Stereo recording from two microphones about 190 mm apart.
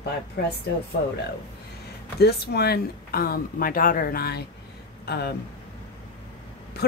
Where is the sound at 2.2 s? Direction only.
55° left (ahead or behind).